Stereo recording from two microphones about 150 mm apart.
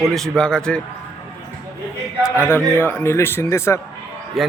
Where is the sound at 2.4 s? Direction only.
15° left (ahead or behind).